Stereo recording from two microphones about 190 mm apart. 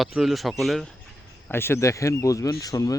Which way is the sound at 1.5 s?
10° left (ahead or behind).